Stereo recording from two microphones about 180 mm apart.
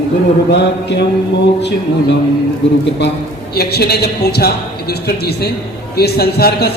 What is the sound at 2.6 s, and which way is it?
Speech, 85° left.